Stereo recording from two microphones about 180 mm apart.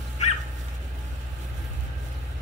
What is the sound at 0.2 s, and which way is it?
Dog, 40° left (ahead or behind).